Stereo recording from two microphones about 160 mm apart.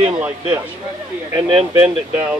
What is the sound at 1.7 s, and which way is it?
Speech, 10° right (ahead or behind).